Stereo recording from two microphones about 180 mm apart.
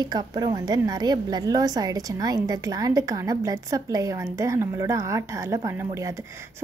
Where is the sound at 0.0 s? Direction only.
20° right (ahead or behind).